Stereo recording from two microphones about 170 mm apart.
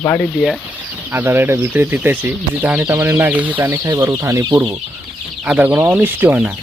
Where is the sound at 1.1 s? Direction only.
10° right (ahead or behind).